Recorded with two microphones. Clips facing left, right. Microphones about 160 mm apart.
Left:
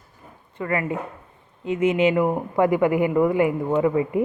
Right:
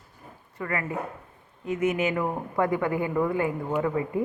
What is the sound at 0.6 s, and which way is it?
Speech, 20° left (ahead or behind).